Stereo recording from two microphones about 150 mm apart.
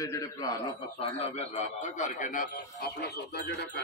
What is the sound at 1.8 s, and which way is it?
A man's voice, 55° left (ahead or behind).